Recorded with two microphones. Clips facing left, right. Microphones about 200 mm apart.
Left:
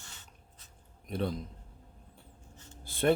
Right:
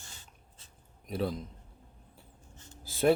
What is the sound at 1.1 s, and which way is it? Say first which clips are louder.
Speech: right 1 dB; centre (ahead or behind).